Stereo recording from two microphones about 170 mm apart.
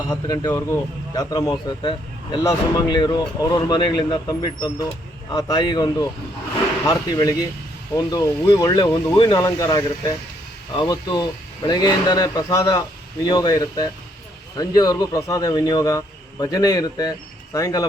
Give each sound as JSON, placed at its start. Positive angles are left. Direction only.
{"t": 0.1, "sound": "a man's voice", "side_deg": 25}